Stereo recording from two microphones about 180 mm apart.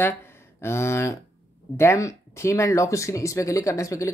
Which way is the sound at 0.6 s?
15° left (ahead or behind).